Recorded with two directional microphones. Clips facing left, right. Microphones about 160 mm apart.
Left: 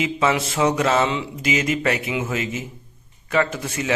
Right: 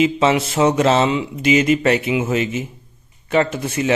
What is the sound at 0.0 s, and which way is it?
A man's voice, 25° right (ahead or behind).